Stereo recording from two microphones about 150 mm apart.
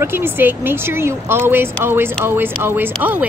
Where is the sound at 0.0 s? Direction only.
15° right (ahead or behind).